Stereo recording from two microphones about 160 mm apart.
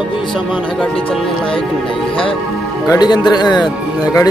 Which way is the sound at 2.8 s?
25° left (ahead or behind).